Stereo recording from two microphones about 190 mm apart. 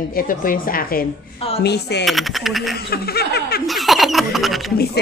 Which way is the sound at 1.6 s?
60° left (ahead or behind).